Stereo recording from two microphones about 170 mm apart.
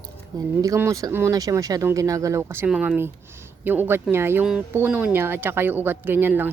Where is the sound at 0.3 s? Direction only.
20° right (ahead or behind).